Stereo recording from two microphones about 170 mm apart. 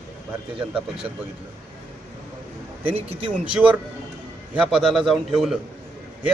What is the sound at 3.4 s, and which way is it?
A man's voice, 5° right (ahead or behind).